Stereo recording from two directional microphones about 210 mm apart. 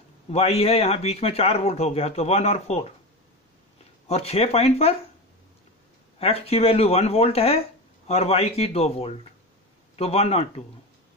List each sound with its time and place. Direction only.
0.3 s speech: 30° left (ahead or behind)
4.1 s speech: 30° left (ahead or behind)
6.1 s speech: 30° left (ahead or behind)